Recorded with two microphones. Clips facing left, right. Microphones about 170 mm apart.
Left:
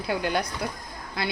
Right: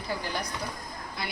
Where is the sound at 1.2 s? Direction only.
90° left.